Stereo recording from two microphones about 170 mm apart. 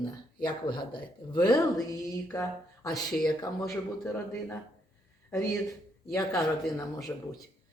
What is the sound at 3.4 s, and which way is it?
Speech, 15° left (ahead or behind).